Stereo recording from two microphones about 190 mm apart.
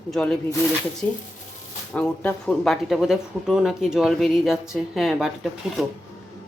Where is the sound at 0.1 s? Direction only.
Centre (ahead or behind).